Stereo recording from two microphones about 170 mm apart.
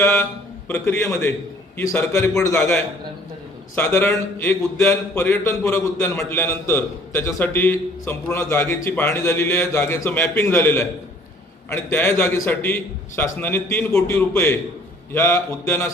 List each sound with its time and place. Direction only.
0.7 s a man's voice: 15° left (ahead or behind)